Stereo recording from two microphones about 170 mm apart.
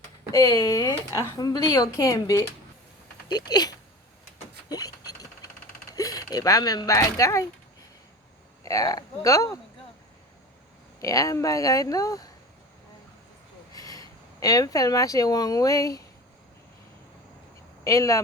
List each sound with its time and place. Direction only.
0.3 s speech: 20° left (ahead or behind)
4.7 s a sound: 20° left (ahead or behind)
6.0 s speech: 20° left (ahead or behind)
8.6 s speech: 20° left (ahead or behind)
11.0 s speech: 20° left (ahead or behind)
13.7 s speech: 20° left (ahead or behind)
17.8 s speech: 20° left (ahead or behind)